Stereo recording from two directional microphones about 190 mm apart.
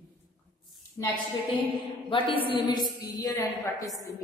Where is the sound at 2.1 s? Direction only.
25° left (ahead or behind).